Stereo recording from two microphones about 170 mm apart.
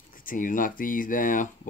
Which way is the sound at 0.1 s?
50° left (ahead or behind).